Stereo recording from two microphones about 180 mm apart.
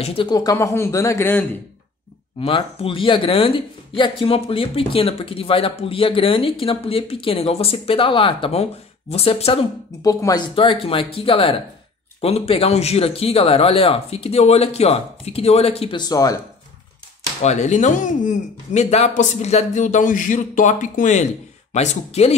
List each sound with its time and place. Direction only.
0.0 s speech: 30° left (ahead or behind); by 1.6 s 10° left (ahead or behind)
2.4 s speech: 30° left (ahead or behind)
10.0 s speech: 20° left (ahead or behind)
16.0 s speech: 20° left (ahead or behind)
17.4 s speech: 40° left (ahead or behind)